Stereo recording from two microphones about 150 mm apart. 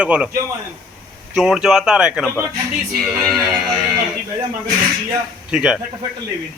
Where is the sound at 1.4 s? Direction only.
5° right (ahead or behind).